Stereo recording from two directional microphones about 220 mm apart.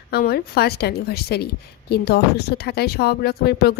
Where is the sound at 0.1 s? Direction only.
45° left (ahead or behind).